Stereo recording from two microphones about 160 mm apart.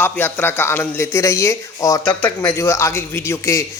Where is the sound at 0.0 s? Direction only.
15° left (ahead or behind).